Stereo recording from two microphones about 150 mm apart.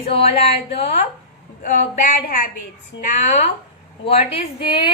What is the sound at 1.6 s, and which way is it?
Speech, 55° left (ahead or behind).